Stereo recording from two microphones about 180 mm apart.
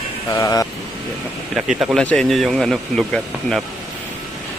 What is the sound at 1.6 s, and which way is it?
Speech, 5° right (ahead or behind).